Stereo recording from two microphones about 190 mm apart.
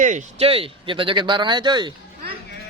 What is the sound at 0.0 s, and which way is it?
Speech, 40° right (ahead or behind).